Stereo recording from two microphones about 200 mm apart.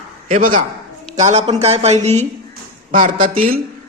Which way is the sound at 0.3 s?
40° right (ahead or behind).